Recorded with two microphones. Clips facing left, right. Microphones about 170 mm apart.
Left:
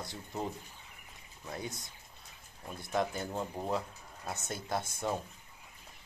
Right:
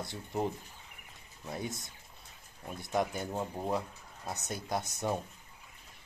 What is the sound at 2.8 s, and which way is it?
Speech, 20° right (ahead or behind).